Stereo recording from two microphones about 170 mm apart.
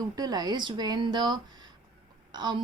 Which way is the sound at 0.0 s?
25° right (ahead or behind).